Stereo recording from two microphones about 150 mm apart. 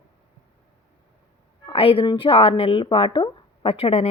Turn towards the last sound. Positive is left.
turn(degrees=40)  # may be behind; listen again after turning